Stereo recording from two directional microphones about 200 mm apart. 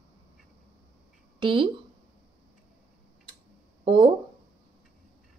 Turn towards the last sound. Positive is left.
turn(degrees=-25)  # may be behind; listen again after turning